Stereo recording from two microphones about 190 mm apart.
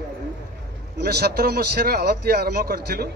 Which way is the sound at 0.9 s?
55° right (ahead or behind).